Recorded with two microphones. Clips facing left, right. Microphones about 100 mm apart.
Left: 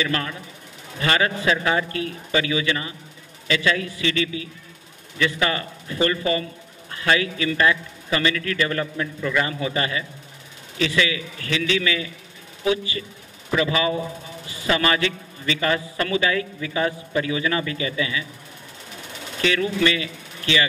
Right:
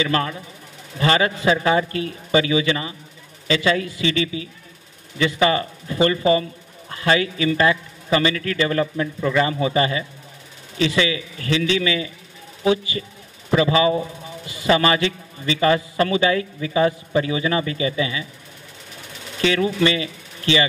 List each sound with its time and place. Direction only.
0.0 s a man's voice: 30° right (ahead or behind)
19.4 s speech: 25° right (ahead or behind)